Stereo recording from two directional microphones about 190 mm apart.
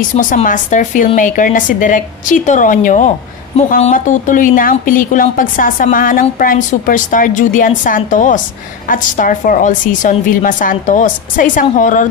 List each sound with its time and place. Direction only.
0.1 s a woman's voice: 40° left (ahead or behind)